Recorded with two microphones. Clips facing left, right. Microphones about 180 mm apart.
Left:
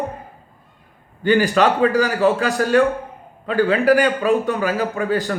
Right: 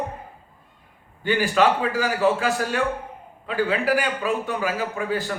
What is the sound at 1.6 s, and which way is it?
Speech, 55° left (ahead or behind).